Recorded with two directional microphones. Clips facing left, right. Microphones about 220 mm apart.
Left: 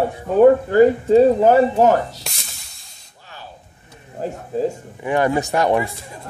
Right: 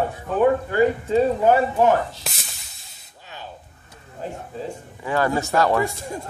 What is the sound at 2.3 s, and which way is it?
Spray, centre (ahead or behind).